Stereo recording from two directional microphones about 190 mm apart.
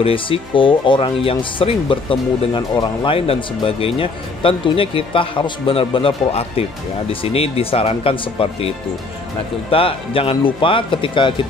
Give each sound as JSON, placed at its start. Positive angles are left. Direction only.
{"t": 0.0, "sound": "speech", "side_deg": 30}